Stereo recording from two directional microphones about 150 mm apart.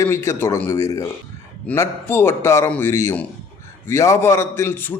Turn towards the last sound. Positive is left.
turn(degrees=15)  # may be behind; listen again after turning